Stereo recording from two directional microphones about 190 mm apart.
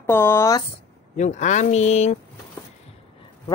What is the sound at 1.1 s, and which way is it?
Speech, 40° left (ahead or behind).